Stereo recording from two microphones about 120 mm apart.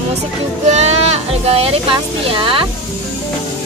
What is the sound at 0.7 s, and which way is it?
Speech, 65° right (ahead or behind).